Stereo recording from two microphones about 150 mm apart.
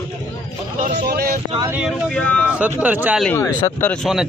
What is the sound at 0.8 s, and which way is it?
Speech, 75° right (ahead or behind).